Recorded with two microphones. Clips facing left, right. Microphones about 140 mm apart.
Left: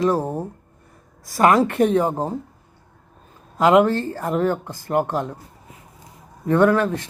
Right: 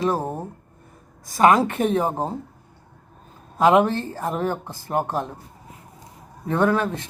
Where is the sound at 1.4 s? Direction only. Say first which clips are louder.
Left 1 dB; 20° right (ahead or behind).